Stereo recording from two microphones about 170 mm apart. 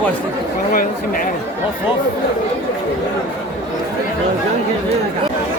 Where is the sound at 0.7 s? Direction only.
55° left (ahead or behind).